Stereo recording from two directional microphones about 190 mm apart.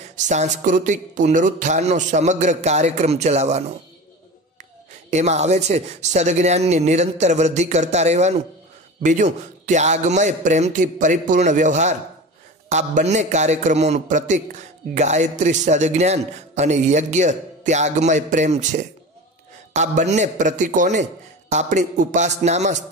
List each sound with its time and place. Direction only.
0.1 s a man's voice: 40° right (ahead or behind)
5.1 s a man's voice: 35° right (ahead or behind)